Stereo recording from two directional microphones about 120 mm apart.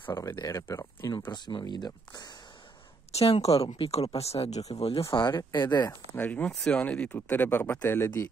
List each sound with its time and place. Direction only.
0.0 s speech: 20° left (ahead or behind)
0.4 s speech: 30° left (ahead or behind)
1.3 s speech: 40° left (ahead or behind)
3.2 s speech: 60° left (ahead or behind)
3.6 s speech: 50° left (ahead or behind)
5.1 s speech: 40° left (ahead or behind)
6.1 s speech: 15° left (ahead or behind)